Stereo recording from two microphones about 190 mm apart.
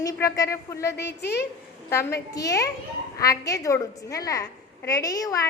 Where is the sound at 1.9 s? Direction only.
15° left (ahead or behind).